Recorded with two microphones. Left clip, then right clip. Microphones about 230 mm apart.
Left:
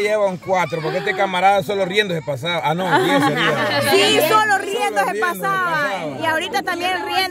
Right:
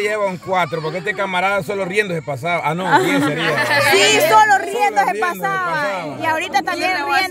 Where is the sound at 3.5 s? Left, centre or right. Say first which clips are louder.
Right 2 dB; right.